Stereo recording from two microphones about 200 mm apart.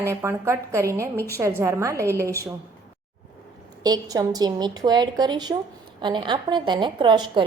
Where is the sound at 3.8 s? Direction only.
20° right (ahead or behind).